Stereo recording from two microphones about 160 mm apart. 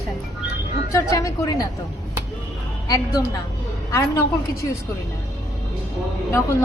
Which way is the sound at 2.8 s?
20° left (ahead or behind).